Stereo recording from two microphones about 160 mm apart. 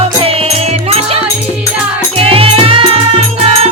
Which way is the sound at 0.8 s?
40° right (ahead or behind).